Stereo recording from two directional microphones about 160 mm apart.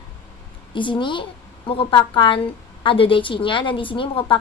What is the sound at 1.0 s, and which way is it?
A woman's voice, 30° left (ahead or behind).